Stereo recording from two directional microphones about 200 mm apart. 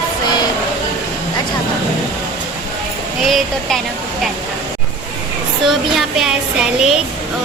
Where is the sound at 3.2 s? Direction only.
Centre (ahead or behind).